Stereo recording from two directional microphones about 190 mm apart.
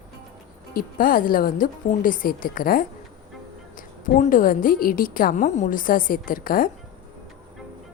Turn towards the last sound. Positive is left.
turn(degrees=50)  # may be behind; listen again after turning